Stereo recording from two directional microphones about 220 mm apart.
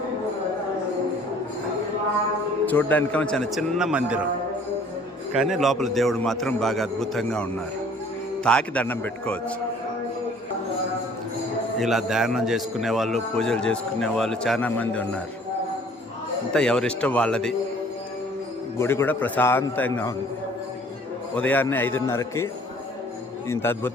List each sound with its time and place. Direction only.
2.6 s a man's voice: 5° left (ahead or behind)
5.3 s a man's voice: centre (ahead or behind)
8.4 s a man's voice: 5° left (ahead or behind)
11.8 s a man's voice: centre (ahead or behind)
16.5 s a man's voice: 5° left (ahead or behind)
18.8 s a man's voice: 10° left (ahead or behind)
21.3 s a man's voice: 5° left (ahead or behind)
23.5 s a man's voice: 10° left (ahead or behind)